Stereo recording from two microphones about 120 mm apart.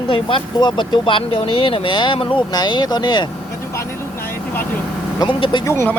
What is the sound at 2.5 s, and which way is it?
Speech, 35° left (ahead or behind).